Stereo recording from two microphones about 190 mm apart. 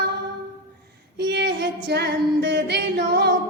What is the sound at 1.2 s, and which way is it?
Singing, 60° right (ahead or behind).